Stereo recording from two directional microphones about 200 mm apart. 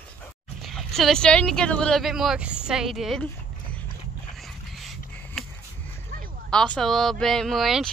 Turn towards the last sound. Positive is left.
turn(degrees=0)  # may be behind; listen again after turning